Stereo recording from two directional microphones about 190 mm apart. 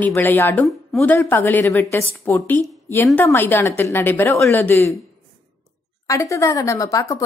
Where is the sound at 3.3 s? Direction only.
10° left (ahead or behind).